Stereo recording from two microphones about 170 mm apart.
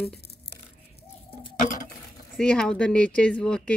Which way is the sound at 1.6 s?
50° left (ahead or behind).